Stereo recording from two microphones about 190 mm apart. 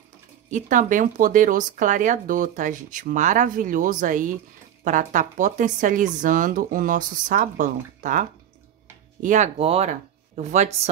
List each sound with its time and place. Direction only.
0.5 s speech: 40° right (ahead or behind)